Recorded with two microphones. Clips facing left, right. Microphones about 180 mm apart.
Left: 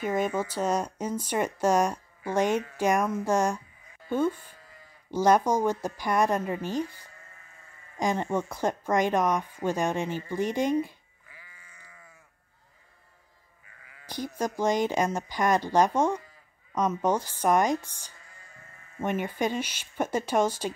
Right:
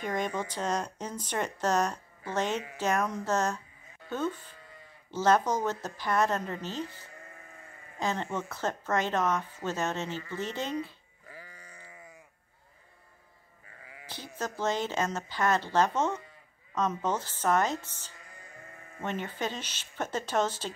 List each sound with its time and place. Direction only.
0.0 s speech: 5° left (ahead or behind)
11.2 s sheep: 40° right (ahead or behind)
14.0 s speech: 15° left (ahead or behind)